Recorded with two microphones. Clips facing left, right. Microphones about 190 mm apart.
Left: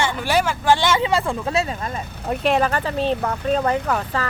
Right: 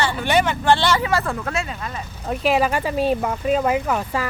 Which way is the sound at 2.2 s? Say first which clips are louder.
Even; centre (ahead or behind).